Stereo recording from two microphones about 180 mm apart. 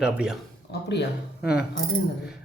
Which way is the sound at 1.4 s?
5° right (ahead or behind).